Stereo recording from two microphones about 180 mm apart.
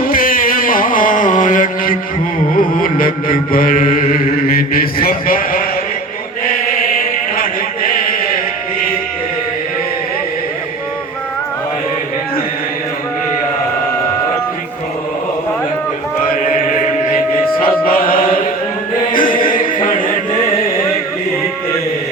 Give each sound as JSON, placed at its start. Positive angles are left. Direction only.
{"t": 0.1, "sound": "mantra", "side_deg": 50}
{"t": 6.9, "sound": "chant", "side_deg": 50}
{"t": 16.5, "sound": "chant", "side_deg": 45}
{"t": 19.4, "sound": "music", "side_deg": 50}